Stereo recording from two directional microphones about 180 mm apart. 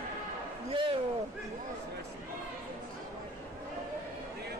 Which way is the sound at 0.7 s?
30° right (ahead or behind).